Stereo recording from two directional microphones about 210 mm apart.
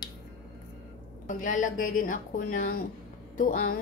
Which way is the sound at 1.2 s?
35° left (ahead or behind).